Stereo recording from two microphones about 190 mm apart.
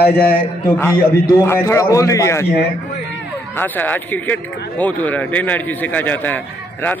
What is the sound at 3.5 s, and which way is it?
A man's voice, 10° left (ahead or behind).